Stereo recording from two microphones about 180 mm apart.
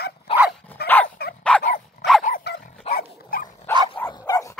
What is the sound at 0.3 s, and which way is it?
Dog, 35° left (ahead or behind).